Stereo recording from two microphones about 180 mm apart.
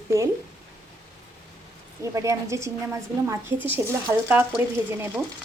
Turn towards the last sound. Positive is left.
turn(degrees=-10)  # may be behind; listen again after turning